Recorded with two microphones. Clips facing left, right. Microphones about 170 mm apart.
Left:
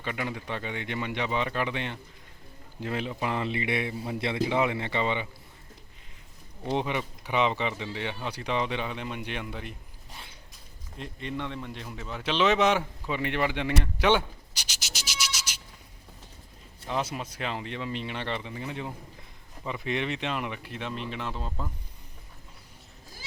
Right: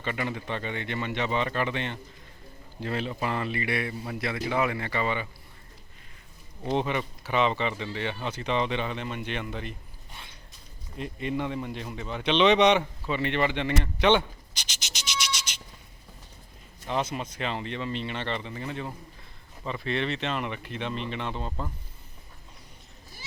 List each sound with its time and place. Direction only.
0.0 s speech: 10° left (ahead or behind)
6.7 s speech: 10° left (ahead or behind)
10.9 s speech: 5° right (ahead or behind)
15.4 s a sound: 10° left (ahead or behind)
16.8 s speech: 5° left (ahead or behind)